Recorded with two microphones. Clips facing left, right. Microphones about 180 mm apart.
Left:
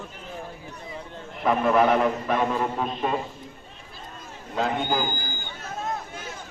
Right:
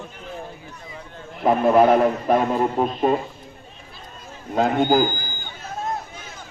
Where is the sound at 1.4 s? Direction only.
35° right (ahead or behind).